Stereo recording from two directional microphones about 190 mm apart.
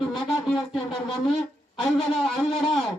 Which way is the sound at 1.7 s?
Centre (ahead or behind).